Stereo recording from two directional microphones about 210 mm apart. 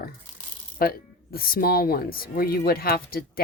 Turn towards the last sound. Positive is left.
turn(degrees=45)  # may be behind; listen again after turning